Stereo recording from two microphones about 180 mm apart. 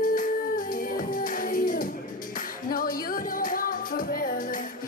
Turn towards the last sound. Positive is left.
turn(degrees=50)  # may be behind; listen again after turning